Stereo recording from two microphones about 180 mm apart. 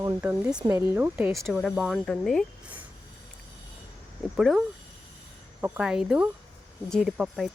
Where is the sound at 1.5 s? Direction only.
Centre (ahead or behind).